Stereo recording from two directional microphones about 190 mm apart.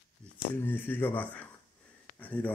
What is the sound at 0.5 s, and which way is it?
Speech, 10° left (ahead or behind).